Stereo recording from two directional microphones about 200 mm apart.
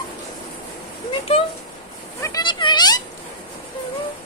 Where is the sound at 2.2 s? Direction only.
20° left (ahead or behind).